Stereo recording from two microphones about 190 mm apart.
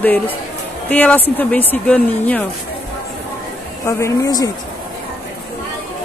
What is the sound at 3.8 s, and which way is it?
Speech, 15° left (ahead or behind).